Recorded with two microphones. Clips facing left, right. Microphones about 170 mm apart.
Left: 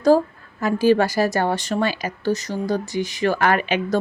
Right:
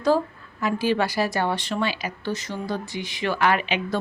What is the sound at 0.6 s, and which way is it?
A woman's voice, 45° left (ahead or behind).